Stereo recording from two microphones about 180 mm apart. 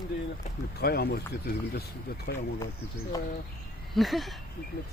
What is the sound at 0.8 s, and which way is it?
Speech, 60° left (ahead or behind).